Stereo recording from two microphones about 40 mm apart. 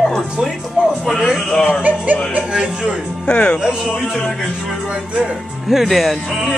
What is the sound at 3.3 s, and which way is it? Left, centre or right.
Speech, left.